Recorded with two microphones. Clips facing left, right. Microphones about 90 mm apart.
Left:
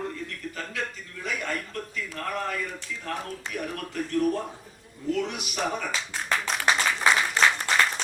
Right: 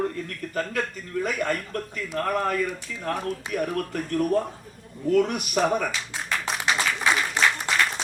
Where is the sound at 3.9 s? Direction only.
50° right (ahead or behind).